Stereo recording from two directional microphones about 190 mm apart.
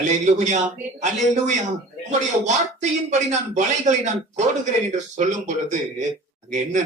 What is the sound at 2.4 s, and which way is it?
A man's voice, 35° right (ahead or behind).